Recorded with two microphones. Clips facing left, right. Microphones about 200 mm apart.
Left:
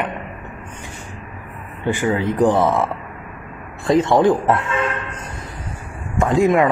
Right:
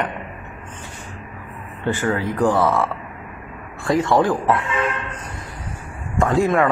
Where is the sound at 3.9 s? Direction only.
20° left (ahead or behind).